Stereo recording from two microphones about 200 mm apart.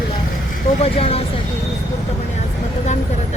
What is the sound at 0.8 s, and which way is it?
Speech, 30° left (ahead or behind).